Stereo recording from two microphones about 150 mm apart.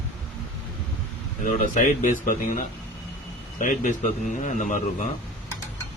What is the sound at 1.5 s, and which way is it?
A man's voice, 60° left (ahead or behind).